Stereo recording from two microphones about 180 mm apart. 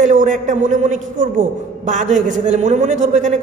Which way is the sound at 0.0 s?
45° right (ahead or behind).